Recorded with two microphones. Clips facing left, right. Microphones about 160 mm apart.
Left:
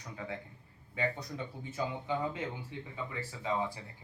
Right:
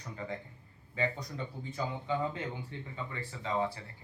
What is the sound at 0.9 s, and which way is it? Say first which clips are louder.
Speech: right 1 dB; 5° left (ahead or behind).